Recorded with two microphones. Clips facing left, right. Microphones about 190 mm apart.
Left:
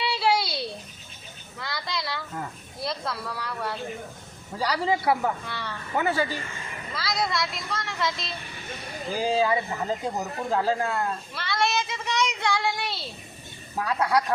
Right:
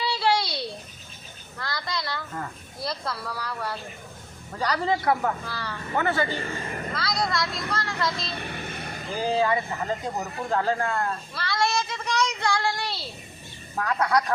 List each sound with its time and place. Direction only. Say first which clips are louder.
0.0 s a sound: even; 5° left (ahead or behind)
4.5 s speech: even; 10° left (ahead or behind)
6.0 s speech: even; 10° left (ahead or behind)
6.4 s speech: right 7 dB; 40° right (ahead or behind)
6.9 s a woman's voice: left 1 dB; 5° left (ahead or behind)
8.4 s vehicle: right 7 dB; 65° right (ahead or behind)
9.1 s speech: even; 10° left (ahead or behind)